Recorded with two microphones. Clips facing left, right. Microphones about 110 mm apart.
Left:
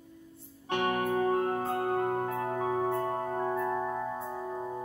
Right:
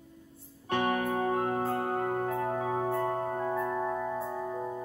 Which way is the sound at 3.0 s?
35° right (ahead or behind).